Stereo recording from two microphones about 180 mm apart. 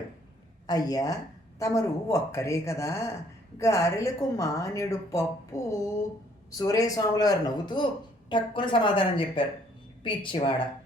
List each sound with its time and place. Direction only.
0.7 s speech: 20° left (ahead or behind)